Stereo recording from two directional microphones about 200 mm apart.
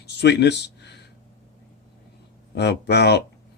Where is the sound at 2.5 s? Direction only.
55° left (ahead or behind).